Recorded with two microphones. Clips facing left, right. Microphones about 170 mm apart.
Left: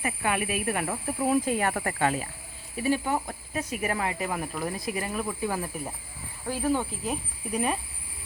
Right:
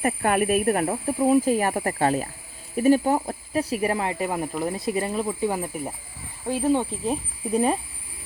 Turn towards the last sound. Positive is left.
turn(degrees=-30)  # may be behind; listen again after turning